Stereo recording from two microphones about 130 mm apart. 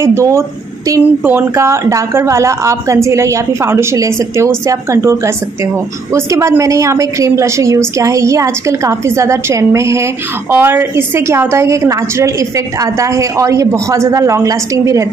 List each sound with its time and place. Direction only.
0.0 s a woman's voice: 20° right (ahead or behind)